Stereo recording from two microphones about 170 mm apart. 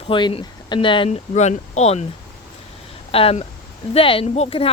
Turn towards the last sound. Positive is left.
turn(degrees=35)  # may be behind; listen again after turning